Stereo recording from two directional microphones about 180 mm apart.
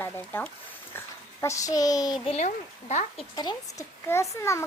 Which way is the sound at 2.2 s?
40° left (ahead or behind).